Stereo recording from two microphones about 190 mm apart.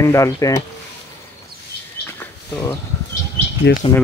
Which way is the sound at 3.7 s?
65° left (ahead or behind).